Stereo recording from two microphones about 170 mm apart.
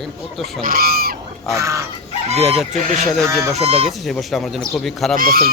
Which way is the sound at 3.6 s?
40° right (ahead or behind).